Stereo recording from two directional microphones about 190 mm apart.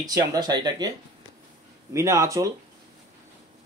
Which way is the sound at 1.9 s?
15° right (ahead or behind).